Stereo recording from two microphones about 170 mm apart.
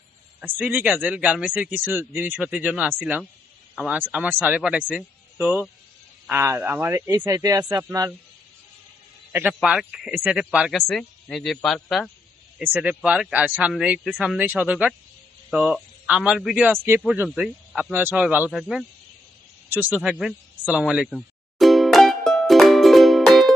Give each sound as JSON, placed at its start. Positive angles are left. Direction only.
{"t": 0.3, "sound": "a man's voice", "side_deg": -5}
{"t": 9.3, "sound": "a man's voice", "side_deg": -10}
{"t": 19.7, "sound": "a sound", "side_deg": -5}